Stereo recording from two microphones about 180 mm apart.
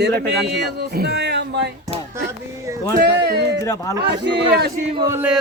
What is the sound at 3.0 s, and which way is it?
Speech, 65° right (ahead or behind).